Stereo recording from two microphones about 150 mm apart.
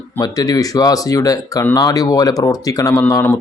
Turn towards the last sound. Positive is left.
turn(degrees=20)  # may be behind; listen again after turning